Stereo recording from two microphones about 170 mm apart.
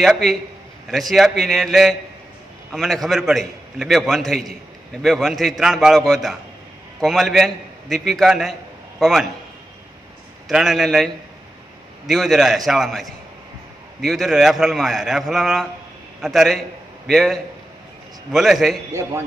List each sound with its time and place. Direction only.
0.0 s a man's voice: centre (ahead or behind)
10.5 s a man's voice: centre (ahead or behind)
12.1 s a man's voice: centre (ahead or behind)
18.9 s a man's voice: 15° right (ahead or behind)